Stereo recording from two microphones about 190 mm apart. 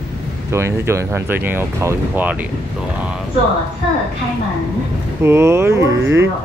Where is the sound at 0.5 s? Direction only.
15° right (ahead or behind).